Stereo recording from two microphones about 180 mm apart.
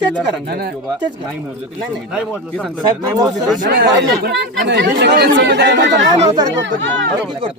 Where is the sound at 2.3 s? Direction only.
5° left (ahead or behind).